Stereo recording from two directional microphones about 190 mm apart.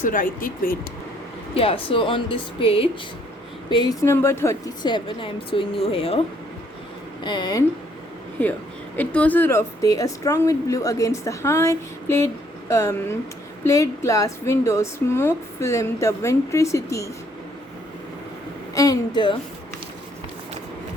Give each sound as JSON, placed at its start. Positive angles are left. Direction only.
{"t": 0.0, "sound": "speech", "side_deg": 45}
{"t": 1.5, "sound": "a woman's voice", "side_deg": 30}
{"t": 7.3, "sound": "a woman's voice", "side_deg": 20}
{"t": 8.4, "sound": "speech", "side_deg": 10}
{"t": 18.7, "sound": "a woman's voice", "side_deg": 20}